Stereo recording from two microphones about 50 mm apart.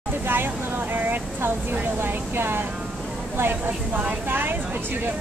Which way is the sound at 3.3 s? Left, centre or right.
Right.